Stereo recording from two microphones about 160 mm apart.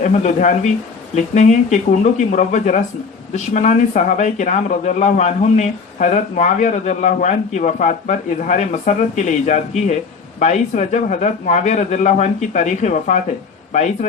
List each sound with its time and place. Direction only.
0.0 s speech: 45° left (ahead or behind)